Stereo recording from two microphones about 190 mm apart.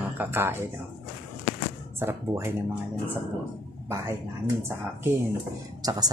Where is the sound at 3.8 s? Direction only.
15° right (ahead or behind).